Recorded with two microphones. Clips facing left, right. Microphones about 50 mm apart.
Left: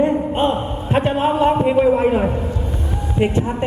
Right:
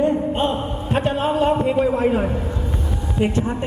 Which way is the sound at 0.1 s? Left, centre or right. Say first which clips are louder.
Left 2 dB; left.